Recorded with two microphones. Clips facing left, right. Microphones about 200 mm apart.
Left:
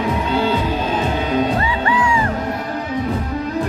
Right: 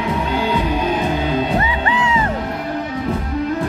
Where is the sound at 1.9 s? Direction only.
20° right (ahead or behind).